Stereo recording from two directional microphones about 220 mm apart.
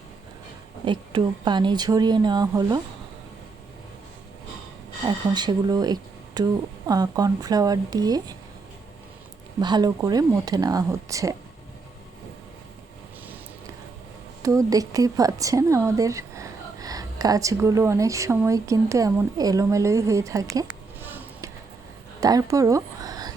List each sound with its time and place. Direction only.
0.9 s speech: 20° right (ahead or behind)
5.0 s speech: 20° right (ahead or behind)
9.6 s speech: 20° right (ahead or behind)
14.4 s a woman's voice: 15° right (ahead or behind)
22.2 s a sound: 15° right (ahead or behind)